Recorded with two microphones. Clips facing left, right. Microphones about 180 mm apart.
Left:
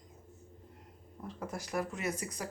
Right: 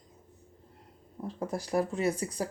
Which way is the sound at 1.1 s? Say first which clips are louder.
Right 7 dB; 30° right (ahead or behind).